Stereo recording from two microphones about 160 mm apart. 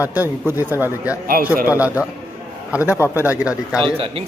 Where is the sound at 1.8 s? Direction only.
10° right (ahead or behind).